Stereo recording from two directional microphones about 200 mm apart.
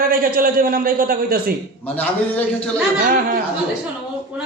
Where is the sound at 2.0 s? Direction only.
5° left (ahead or behind).